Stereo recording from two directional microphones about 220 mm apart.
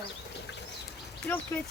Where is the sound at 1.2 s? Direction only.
10° left (ahead or behind).